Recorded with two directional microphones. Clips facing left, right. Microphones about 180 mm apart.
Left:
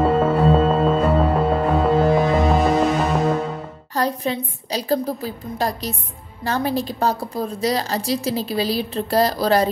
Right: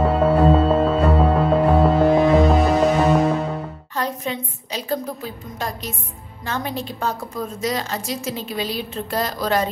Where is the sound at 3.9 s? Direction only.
35° left (ahead or behind).